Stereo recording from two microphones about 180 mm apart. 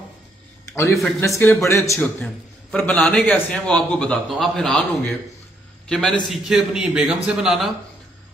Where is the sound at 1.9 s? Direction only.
5° left (ahead or behind).